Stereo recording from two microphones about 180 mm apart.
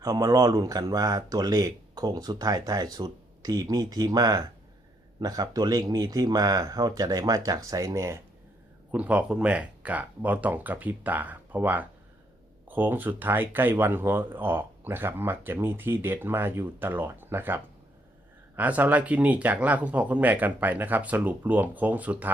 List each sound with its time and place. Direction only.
0.0 s speech: 20° right (ahead or behind)